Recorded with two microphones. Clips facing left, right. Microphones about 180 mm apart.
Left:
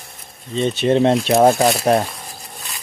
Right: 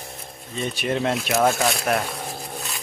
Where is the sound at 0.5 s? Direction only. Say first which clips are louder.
Left 9 dB; 25° left (ahead or behind).